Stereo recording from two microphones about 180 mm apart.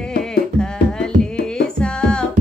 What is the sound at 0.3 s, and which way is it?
Music, 5° left (ahead or behind).